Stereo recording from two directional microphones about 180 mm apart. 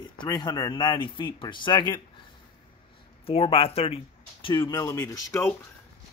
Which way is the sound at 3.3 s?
30° left (ahead or behind).